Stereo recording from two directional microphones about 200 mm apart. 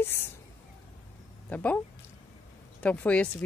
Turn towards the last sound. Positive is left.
turn(degrees=5)  # may be behind; listen again after turning